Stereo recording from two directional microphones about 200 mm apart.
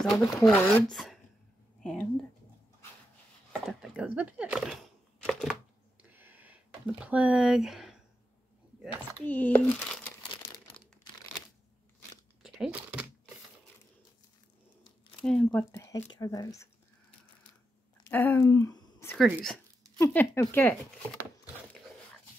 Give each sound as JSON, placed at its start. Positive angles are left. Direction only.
{"t": 0.0, "sound": "speech", "side_deg": 0}
{"t": 3.6, "sound": "speech", "side_deg": -5}
{"t": 6.0, "sound": "a sound", "side_deg": -10}
{"t": 9.2, "sound": "speech", "side_deg": 10}
{"t": 10.8, "sound": "crumpling", "side_deg": 5}
{"t": 12.4, "sound": "crumpling", "side_deg": 0}
{"t": 15.2, "sound": "speech", "side_deg": 5}
{"t": 18.1, "sound": "speech", "side_deg": 10}
{"t": 19.1, "sound": "speech", "side_deg": -5}
{"t": 20.0, "sound": "speech", "side_deg": 10}